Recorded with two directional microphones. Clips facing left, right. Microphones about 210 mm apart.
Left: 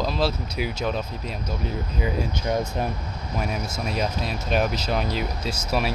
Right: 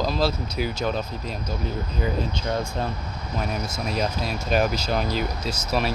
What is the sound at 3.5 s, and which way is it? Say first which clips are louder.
Speech: even; 5° left (ahead or behind).